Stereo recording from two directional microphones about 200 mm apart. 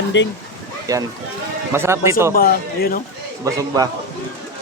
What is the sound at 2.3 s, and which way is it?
Speech, 45° left (ahead or behind).